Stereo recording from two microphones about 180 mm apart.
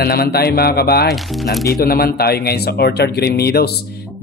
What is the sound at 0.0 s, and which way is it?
Speech, 60° left (ahead or behind).